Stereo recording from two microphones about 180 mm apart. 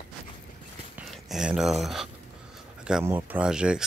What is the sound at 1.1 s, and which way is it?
Speech, centre (ahead or behind).